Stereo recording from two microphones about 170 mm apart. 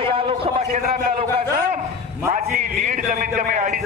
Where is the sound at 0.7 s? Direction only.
45° right (ahead or behind).